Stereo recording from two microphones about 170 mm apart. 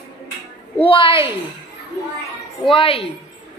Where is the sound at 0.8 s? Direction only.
30° left (ahead or behind).